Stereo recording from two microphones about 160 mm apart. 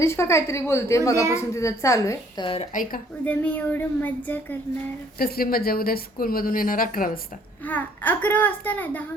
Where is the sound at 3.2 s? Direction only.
10° left (ahead or behind).